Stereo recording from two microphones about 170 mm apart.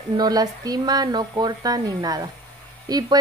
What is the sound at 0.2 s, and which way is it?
A woman's voice, 20° right (ahead or behind).